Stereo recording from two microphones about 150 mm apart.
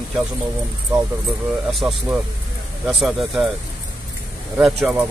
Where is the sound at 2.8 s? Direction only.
Centre (ahead or behind).